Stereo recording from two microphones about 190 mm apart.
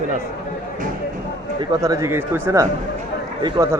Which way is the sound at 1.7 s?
20° right (ahead or behind).